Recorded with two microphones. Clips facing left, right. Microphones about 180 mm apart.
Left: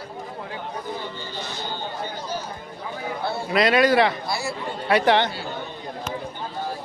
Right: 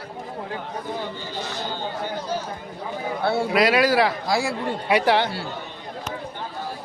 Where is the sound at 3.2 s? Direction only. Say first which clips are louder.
Right 7 dB; 80° right.